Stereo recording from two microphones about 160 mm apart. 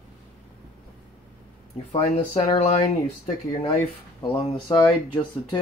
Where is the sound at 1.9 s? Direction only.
35° left (ahead or behind).